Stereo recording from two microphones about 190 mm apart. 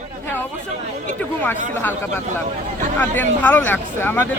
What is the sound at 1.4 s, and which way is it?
Speech, 10° left (ahead or behind).